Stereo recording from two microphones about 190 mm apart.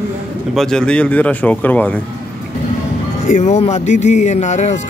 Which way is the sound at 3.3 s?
40° left (ahead or behind).